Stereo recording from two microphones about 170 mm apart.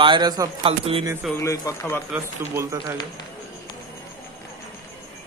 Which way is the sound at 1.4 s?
20° left (ahead or behind).